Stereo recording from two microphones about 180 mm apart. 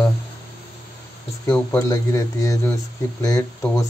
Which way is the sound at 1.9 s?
20° left (ahead or behind).